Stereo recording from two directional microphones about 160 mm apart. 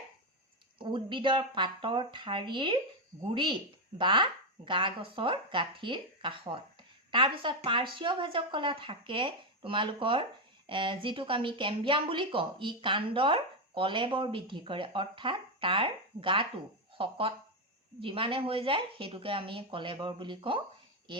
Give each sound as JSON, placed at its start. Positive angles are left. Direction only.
{"t": 0.8, "sound": "speech", "side_deg": -30}